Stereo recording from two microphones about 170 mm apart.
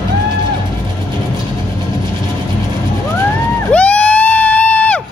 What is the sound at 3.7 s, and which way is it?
Crowd, 10° left (ahead or behind).